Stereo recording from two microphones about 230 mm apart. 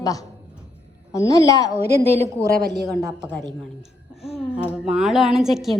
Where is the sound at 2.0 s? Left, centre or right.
Right.